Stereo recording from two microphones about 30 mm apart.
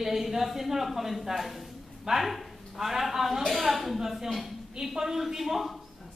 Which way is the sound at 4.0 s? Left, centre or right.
Centre.